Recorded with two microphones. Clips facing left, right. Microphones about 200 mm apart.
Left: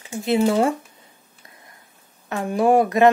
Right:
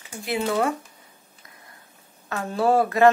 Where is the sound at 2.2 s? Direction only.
20° left (ahead or behind).